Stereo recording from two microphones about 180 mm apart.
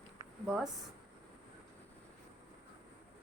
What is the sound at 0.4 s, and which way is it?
Speech, 5° right (ahead or behind).